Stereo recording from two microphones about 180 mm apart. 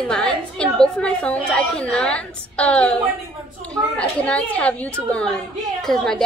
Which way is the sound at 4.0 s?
5° left (ahead or behind).